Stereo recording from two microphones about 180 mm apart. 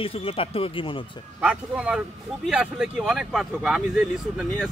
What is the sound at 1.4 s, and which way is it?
Speech, 5° right (ahead or behind).